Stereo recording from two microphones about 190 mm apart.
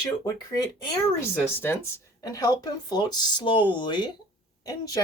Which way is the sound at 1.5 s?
10° left (ahead or behind).